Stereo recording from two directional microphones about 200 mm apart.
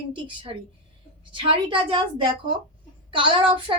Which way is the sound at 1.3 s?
25° right (ahead or behind).